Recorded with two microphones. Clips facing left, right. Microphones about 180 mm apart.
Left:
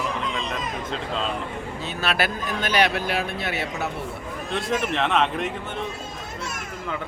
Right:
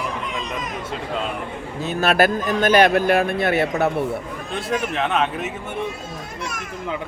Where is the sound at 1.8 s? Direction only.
45° right (ahead or behind).